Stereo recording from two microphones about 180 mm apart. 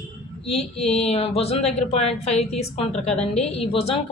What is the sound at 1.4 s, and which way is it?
A woman's voice, 35° left (ahead or behind).